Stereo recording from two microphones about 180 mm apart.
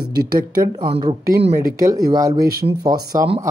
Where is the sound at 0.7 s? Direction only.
25° right (ahead or behind).